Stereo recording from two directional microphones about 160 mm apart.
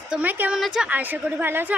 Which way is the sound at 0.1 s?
10° right (ahead or behind).